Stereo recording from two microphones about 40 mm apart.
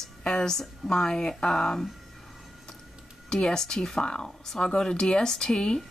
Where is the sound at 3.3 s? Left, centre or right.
Centre.